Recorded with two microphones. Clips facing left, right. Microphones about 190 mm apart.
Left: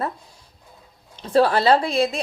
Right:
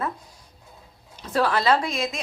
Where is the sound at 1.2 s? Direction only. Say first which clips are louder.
Left 5 dB; 30° left (ahead or behind).